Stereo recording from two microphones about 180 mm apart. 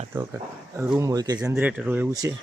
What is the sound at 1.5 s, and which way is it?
Speech, 10° right (ahead or behind).